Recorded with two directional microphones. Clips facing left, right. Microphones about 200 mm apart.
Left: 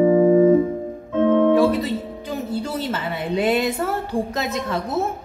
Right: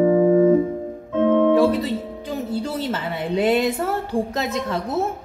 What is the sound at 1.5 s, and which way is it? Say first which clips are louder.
Music: even; 30° right (ahead or behind).